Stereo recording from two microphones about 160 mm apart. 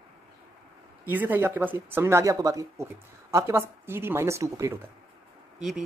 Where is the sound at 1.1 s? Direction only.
10° right (ahead or behind).